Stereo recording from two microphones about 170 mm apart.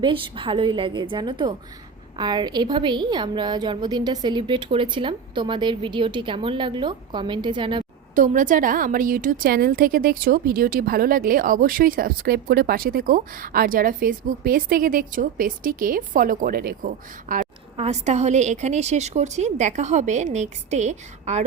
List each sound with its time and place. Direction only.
0.0 s a woman's voice: 30° right (ahead or behind)
8.1 s a woman's voice: 50° right (ahead or behind)
17.7 s a woman's voice: 40° right (ahead or behind)